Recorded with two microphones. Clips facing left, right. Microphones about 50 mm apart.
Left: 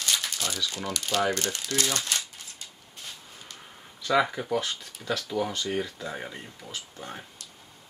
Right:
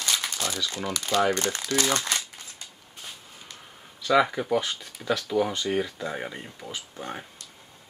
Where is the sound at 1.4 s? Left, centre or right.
Right.